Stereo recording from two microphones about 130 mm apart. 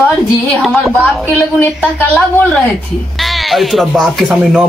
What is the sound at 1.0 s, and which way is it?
Speech, 15° left (ahead or behind).